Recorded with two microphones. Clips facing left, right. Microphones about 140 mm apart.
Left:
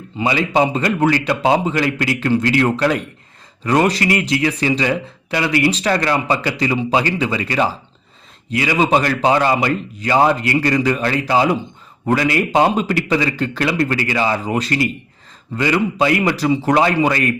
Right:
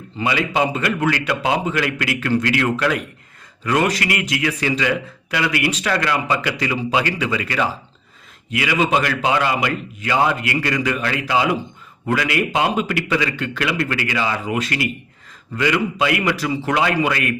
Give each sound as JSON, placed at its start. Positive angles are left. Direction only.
{"t": 0.3, "sound": "a man's voice", "side_deg": 30}